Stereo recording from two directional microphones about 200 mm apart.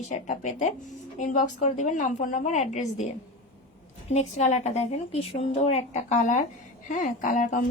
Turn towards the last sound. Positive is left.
turn(degrees=40)  # may be behind; listen again after turning